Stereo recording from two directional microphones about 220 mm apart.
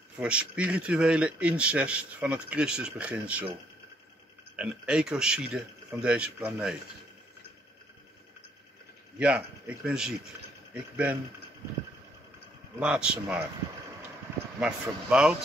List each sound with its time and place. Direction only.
0.2 s a man's voice: 5° right (ahead or behind)
4.6 s a man's voice: 5° right (ahead or behind)
9.2 s a man's voice: 5° right (ahead or behind)
12.7 s a man's voice: 5° right (ahead or behind)
14.6 s a man's voice: 5° right (ahead or behind)